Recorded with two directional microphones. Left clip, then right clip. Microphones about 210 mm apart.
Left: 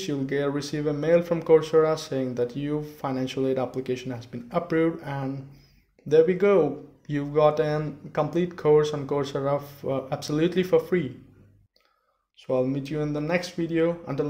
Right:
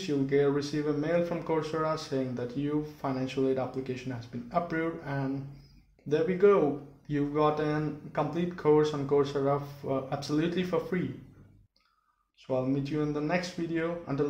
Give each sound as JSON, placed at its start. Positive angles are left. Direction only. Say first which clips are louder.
{"t": 0.0, "sound": "speech", "louder": "even", "side_deg": 45}
{"t": 12.4, "sound": "speech", "louder": "left 5 dB", "side_deg": 45}